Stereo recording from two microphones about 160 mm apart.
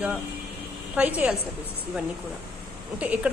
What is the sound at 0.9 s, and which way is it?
Speech, 10° right (ahead or behind).